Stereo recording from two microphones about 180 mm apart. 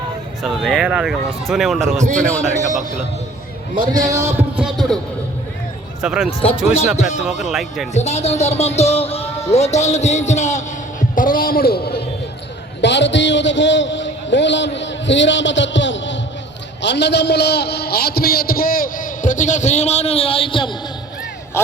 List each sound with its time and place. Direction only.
0.4 s speech: centre (ahead or behind)
2.4 s a man's voice: 45° right (ahead or behind)
4.0 s speech: 20° right (ahead or behind); by 4.9 s centre (ahead or behind)
6.0 s speech: 5° right (ahead or behind)
7.3 s speech: centre (ahead or behind)
7.9 s a man's voice: 40° left (ahead or behind)
11.1 s a sound: 50° left (ahead or behind)
12.8 s a sound: 75° left (ahead or behind)
16.8 s a man's voice: 75° left (ahead or behind); by 20.7 s 30° left (ahead or behind)